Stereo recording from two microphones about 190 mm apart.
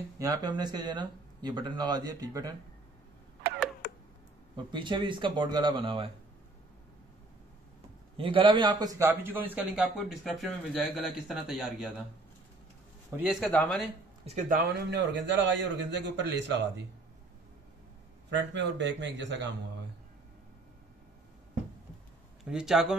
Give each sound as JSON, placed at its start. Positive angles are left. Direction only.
{"t": 0.2, "sound": "speech", "side_deg": -20}
{"t": 3.8, "sound": "tick-tock", "side_deg": 50}
{"t": 4.6, "sound": "speech", "side_deg": -25}
{"t": 8.2, "sound": "a man's voice", "side_deg": -25}
{"t": 13.1, "sound": "a man's voice", "side_deg": -10}
{"t": 13.4, "sound": "a man's voice", "side_deg": 5}
{"t": 14.2, "sound": "speech", "side_deg": -35}
{"t": 14.6, "sound": "a man's voice", "side_deg": -60}
{"t": 18.3, "sound": "a man's voice", "side_deg": -70}
{"t": 22.4, "sound": "a man's voice", "side_deg": -5}